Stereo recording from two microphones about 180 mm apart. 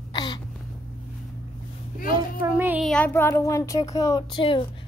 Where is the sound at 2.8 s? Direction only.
10° left (ahead or behind); by 4.6 s 25° left (ahead or behind).